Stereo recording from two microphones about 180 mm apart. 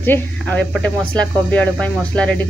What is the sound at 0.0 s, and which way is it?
A woman's voice, 10° left (ahead or behind).